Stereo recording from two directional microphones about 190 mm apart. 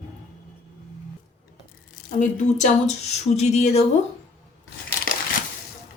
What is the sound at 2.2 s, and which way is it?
Speech, 40° left (ahead or behind).